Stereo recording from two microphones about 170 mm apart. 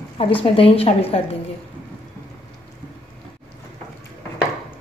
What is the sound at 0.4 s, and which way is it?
Speech, 35° left (ahead or behind).